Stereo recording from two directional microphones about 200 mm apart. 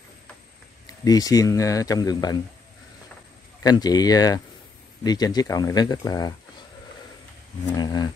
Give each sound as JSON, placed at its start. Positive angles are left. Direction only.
{"t": 0.8, "sound": "speech", "side_deg": 20}
{"t": 3.6, "sound": "speech", "side_deg": 20}
{"t": 7.7, "sound": "speech", "side_deg": 20}